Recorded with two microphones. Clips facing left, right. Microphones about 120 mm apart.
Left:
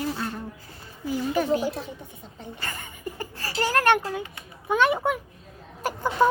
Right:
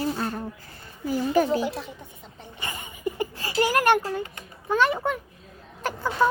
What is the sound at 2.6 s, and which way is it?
Speech, 15° right (ahead or behind).